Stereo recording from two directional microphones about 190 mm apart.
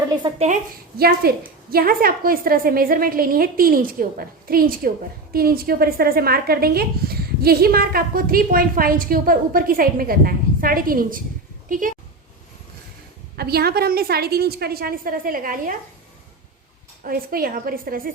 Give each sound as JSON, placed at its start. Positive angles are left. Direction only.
{"t": 0.2, "sound": "a woman's voice", "side_deg": -25}
{"t": 0.9, "sound": "a woman's voice", "side_deg": -55}
{"t": 13.3, "sound": "a woman's voice", "side_deg": -55}
{"t": 17.0, "sound": "a woman's voice", "side_deg": -50}